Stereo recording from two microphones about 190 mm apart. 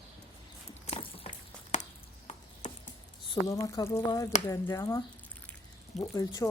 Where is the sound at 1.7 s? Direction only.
40° left (ahead or behind).